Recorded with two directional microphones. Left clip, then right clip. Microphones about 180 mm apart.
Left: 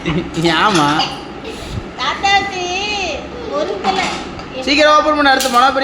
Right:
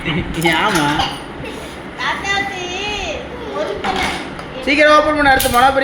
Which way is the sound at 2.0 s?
65° left (ahead or behind).